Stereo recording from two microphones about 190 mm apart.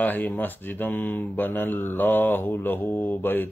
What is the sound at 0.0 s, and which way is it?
Speech, 10° left (ahead or behind).